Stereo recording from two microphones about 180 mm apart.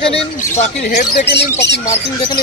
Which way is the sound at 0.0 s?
35° left (ahead or behind).